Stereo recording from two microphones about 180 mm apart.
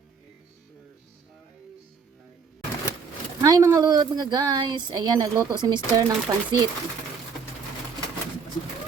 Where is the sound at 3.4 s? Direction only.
20° right (ahead or behind).